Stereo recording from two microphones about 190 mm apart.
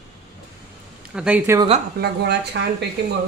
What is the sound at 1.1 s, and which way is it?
Speech, 5° right (ahead or behind).